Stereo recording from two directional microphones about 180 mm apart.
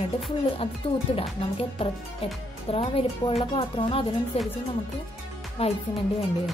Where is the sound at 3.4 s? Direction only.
30° left (ahead or behind).